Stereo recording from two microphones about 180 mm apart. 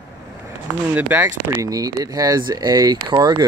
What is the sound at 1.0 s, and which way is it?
Speech, 10° right (ahead or behind).